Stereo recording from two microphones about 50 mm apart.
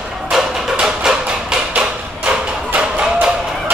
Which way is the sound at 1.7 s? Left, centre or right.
Right.